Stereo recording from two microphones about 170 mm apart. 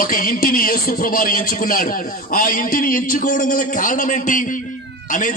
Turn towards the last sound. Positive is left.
turn(degrees=50)  # may be behind; listen again after turning